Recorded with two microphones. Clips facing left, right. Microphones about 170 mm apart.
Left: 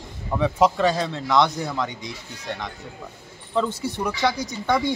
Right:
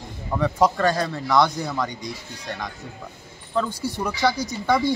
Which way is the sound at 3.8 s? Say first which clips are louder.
Even; 25° left (ahead or behind).